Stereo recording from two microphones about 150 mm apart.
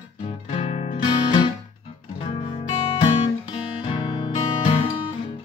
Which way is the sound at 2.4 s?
35° left (ahead or behind).